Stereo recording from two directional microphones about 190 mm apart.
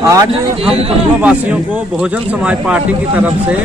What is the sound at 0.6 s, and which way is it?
Speech, 30° right (ahead or behind).